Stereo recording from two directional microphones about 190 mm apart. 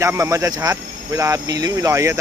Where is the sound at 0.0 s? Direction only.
15° right (ahead or behind).